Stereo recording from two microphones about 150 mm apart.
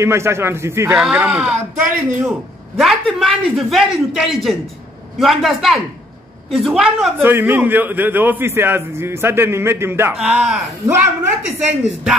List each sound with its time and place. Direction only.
0.0 s a man's voice: 15° right (ahead or behind)
0.9 s a man's voice: 5° right (ahead or behind)
2.8 s a man's voice: centre (ahead or behind)
7.2 s a man's voice: 15° right (ahead or behind)
10.1 s a man's voice: 5° right (ahead or behind)